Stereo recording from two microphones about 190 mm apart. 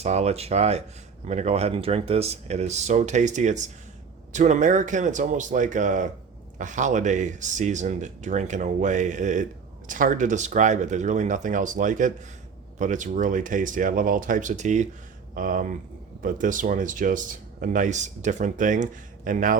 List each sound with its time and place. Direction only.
0.0 s speech: 35° right (ahead or behind)